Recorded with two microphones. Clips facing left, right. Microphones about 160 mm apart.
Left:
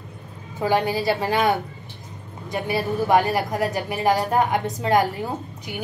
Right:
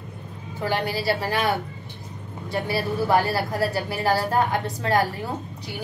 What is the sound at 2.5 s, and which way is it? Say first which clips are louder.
A woman's voice: left 1 dB; 20° left (ahead or behind).